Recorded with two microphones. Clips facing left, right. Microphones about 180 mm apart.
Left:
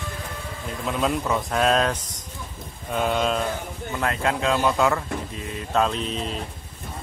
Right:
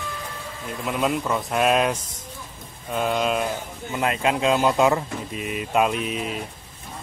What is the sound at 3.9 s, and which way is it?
Speech, 20° right (ahead or behind).